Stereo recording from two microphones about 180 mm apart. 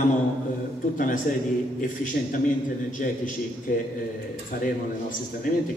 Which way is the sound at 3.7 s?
50° left (ahead or behind).